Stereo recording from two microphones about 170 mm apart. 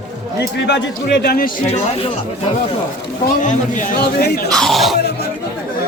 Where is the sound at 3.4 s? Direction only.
45° left (ahead or behind); by 4.4 s 65° left (ahead or behind).